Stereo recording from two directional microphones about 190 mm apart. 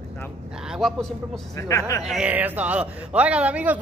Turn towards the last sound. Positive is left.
turn(degrees=-5)  # may be behind; listen again after turning